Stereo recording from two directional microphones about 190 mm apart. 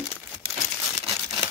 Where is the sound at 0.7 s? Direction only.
10° right (ahead or behind).